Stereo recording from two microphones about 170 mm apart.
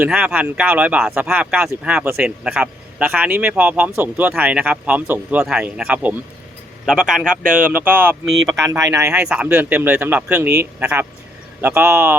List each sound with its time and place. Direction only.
0.0 s speech: 5° right (ahead or behind)
9.1 s speech: 5° right (ahead or behind)